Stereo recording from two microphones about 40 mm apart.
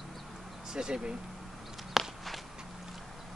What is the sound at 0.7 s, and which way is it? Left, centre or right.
Speech, centre.